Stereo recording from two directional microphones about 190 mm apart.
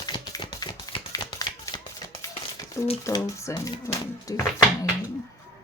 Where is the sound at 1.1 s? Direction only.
20° left (ahead or behind).